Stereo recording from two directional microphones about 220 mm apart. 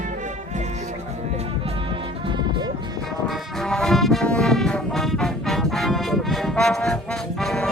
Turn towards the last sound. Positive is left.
turn(degrees=5)  # may be behind; listen again after turning